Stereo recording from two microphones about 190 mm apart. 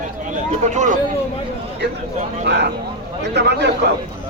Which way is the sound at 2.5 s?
70° right (ahead or behind).